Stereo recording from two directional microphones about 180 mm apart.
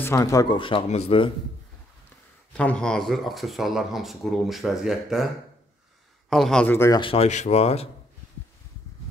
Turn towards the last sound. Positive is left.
turn(degrees=35)  # may be behind; listen again after turning